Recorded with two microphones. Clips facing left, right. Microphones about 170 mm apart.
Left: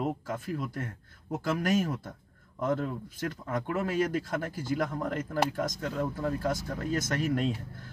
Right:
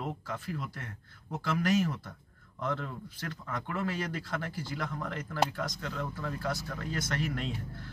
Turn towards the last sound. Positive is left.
turn(degrees=45)  # may be behind; listen again after turning